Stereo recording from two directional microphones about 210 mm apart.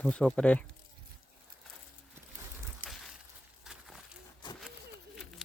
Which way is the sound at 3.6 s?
Centre (ahead or behind).